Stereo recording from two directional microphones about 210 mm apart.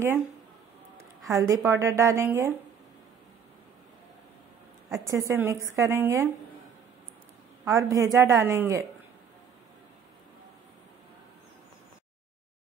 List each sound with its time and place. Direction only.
1.3 s a woman's voice: 15° right (ahead or behind)
4.9 s a woman's voice: 15° right (ahead or behind)
7.6 s a woman's voice: 15° right (ahead or behind)